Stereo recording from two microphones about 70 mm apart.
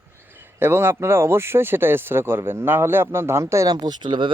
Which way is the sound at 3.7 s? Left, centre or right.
Right.